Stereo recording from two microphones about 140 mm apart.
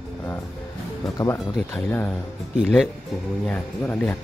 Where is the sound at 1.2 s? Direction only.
25° left (ahead or behind).